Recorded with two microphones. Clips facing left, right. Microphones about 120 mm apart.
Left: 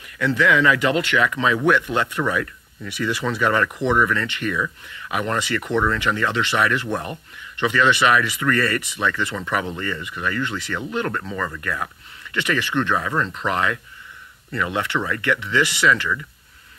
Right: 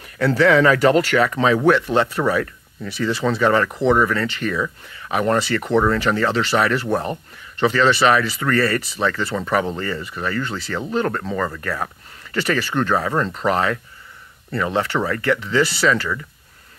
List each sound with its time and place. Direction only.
0.0 s speech: 35° right (ahead or behind)